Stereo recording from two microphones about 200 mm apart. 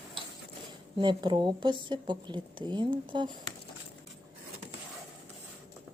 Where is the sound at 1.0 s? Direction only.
25° right (ahead or behind).